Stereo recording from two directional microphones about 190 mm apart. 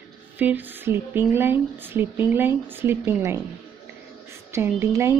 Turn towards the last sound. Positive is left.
turn(degrees=-15)  # may be behind; listen again after turning